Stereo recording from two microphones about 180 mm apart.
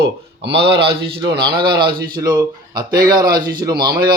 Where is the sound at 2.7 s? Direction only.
55° right (ahead or behind).